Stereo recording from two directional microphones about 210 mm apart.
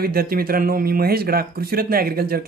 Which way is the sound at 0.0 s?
45° right (ahead or behind).